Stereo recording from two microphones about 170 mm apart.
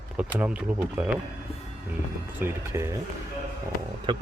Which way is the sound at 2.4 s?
15° right (ahead or behind).